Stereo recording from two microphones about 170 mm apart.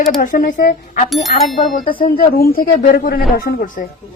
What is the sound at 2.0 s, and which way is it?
A woman's voice, 60° left (ahead or behind).